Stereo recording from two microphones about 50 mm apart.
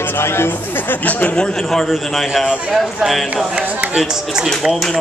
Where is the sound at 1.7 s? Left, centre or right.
Centre.